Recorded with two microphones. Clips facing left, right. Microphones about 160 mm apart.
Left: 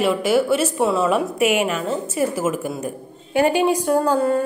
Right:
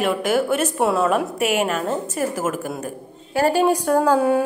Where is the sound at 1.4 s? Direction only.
40° right (ahead or behind).